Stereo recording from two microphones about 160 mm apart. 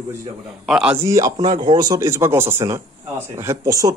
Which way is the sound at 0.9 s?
20° right (ahead or behind).